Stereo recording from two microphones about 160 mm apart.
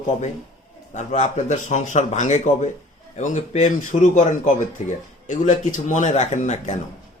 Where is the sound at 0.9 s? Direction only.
45° left (ahead or behind).